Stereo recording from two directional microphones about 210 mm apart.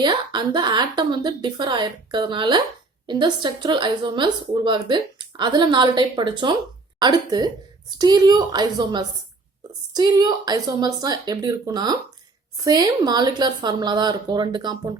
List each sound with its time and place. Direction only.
0.0 s a woman's voice: 20° right (ahead or behind)